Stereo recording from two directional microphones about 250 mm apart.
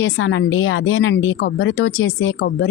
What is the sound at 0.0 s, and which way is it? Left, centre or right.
Speech, left.